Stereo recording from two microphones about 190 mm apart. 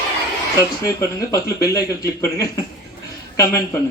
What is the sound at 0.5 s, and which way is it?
Speech, 15° left (ahead or behind).